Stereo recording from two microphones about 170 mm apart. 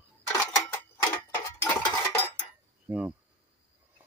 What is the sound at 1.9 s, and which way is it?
Cutlery, 15° left (ahead or behind).